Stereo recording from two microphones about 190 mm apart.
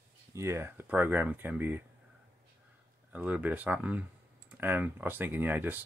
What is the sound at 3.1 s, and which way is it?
Speech, 10° right (ahead or behind).